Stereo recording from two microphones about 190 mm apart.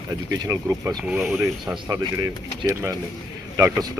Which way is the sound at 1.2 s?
Centre (ahead or behind).